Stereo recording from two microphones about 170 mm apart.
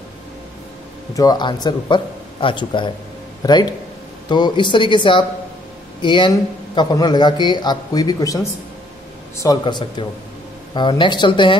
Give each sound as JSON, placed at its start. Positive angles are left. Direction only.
{"t": 1.1, "sound": "a man's voice", "side_deg": 25}
{"t": 9.4, "sound": "a man's voice", "side_deg": 25}